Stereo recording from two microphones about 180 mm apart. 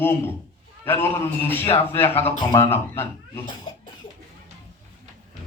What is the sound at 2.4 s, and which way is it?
Speech, 25° left (ahead or behind).